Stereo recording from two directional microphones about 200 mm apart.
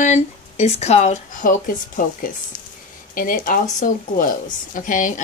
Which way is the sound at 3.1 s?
45° left (ahead or behind).